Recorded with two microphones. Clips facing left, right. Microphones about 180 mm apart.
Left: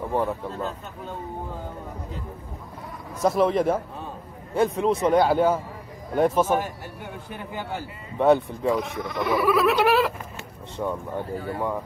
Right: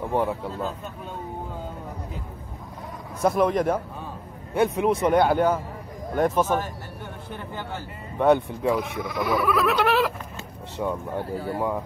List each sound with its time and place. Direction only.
0.1 s speech: 10° right (ahead or behind)
3.2 s speech: centre (ahead or behind)
4.6 s speech: 10° right (ahead or behind)
5.1 s speech: 5° left (ahead or behind)
11.3 s speech: 35° right (ahead or behind)